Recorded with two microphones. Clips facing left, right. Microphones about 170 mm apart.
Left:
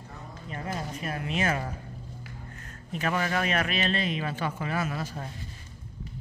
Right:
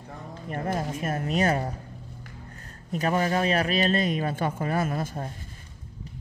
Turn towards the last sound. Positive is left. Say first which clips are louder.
# right 4 dB
turn(degrees=-50)  # may be behind; listen again after turning